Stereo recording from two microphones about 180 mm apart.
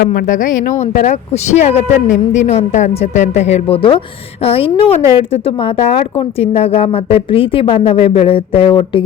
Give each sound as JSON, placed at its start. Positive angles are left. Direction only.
{"t": 0.0, "sound": "a woman's voice", "side_deg": 45}